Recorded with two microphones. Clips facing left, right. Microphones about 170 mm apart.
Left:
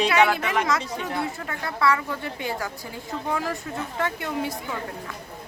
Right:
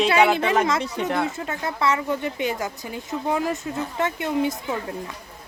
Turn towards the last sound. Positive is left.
turn(degrees=-20)  # may be behind; listen again after turning